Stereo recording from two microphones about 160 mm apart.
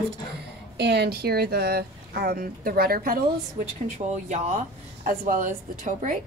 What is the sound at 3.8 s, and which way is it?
Speech, 45° right (ahead or behind).